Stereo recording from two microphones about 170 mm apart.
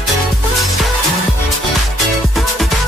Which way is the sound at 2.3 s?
Centre (ahead or behind).